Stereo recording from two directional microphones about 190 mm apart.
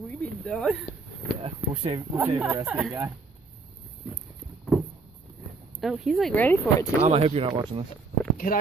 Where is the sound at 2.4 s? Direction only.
10° right (ahead or behind).